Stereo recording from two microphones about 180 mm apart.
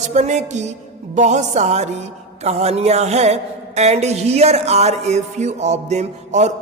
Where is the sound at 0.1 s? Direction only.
40° right (ahead or behind).